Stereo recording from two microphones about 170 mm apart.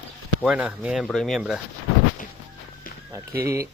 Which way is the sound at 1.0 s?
5° left (ahead or behind).